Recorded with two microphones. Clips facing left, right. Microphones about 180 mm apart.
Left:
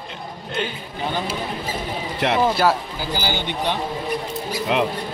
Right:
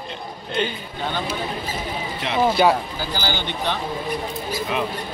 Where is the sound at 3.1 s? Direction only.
15° left (ahead or behind).